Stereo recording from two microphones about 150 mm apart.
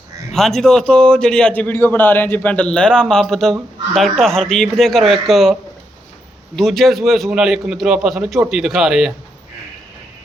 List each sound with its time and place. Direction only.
0.3 s a man's voice: centre (ahead or behind)
6.6 s a man's voice: centre (ahead or behind)